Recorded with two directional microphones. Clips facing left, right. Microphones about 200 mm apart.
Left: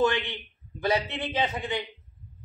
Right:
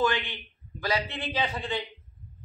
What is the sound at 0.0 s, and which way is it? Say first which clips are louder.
A man's voice: left 2 dB; 25° left (ahead or behind).